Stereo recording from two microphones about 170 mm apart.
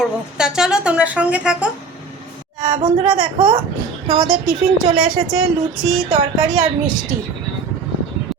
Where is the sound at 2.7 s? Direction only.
25° right (ahead or behind).